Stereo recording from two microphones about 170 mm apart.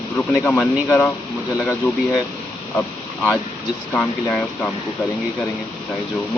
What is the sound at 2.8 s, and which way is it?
Speech, 10° left (ahead or behind).